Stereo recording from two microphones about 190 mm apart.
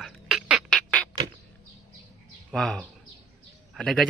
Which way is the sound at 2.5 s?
Centre (ahead or behind).